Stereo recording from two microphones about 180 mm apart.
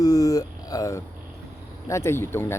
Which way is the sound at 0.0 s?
20° left (ahead or behind).